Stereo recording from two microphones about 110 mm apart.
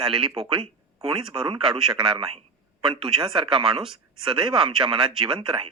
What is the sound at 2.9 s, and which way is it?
Speech, 50° right (ahead or behind).